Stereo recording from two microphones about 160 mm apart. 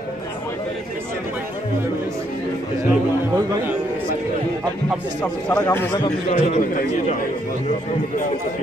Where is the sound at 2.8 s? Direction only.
15° right (ahead or behind).